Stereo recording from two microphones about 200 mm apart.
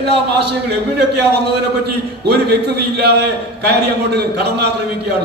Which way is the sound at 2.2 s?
55° right (ahead or behind).